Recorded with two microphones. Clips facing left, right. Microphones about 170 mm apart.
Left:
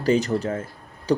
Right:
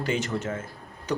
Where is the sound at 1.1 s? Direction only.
30° left (ahead or behind).